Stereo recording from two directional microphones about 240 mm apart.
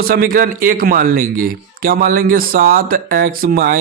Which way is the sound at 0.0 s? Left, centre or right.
Right.